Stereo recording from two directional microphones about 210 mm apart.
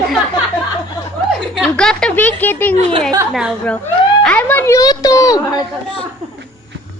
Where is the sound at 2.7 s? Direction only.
30° right (ahead or behind).